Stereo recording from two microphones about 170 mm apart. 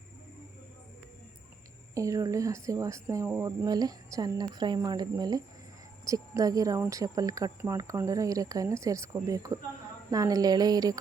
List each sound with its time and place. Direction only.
2.0 s speech: 20° right (ahead or behind)